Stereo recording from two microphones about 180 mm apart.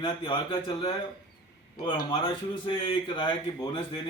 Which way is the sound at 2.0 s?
25° left (ahead or behind).